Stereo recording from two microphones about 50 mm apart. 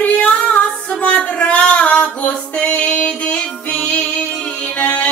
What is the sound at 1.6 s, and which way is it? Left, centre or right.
Female singing, left.